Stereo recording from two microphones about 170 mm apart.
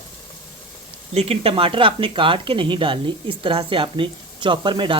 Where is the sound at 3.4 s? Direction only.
30° right (ahead or behind).